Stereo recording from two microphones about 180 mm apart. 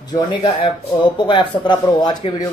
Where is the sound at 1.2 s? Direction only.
25° left (ahead or behind).